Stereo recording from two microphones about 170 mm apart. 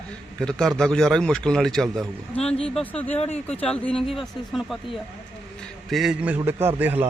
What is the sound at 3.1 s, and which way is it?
Speech, 40° left (ahead or behind).